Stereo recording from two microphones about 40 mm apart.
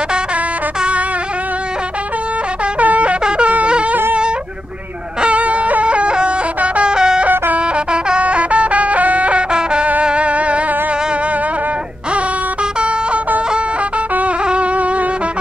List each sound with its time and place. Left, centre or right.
2.8 s shofar: right
5.2 s a sound: right
7.5 s music: right
9.5 s music: right
14.4 s wind instrument: right